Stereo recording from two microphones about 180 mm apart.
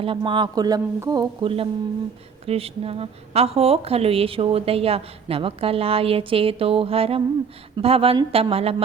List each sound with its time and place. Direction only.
0.0 s a woman's voice: 30° right (ahead or behind)